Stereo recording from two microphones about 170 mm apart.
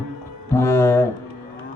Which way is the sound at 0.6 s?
15° left (ahead or behind).